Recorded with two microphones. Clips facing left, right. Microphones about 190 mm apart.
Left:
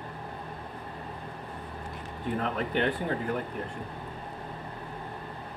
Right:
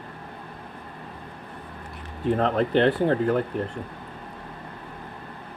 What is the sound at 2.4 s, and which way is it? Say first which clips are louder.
Speech: right 7 dB; 90° right.